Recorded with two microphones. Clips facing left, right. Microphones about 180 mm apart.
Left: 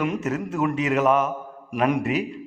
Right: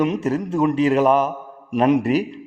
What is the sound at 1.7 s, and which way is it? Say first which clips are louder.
Speech: right 6 dB; 20° right (ahead or behind).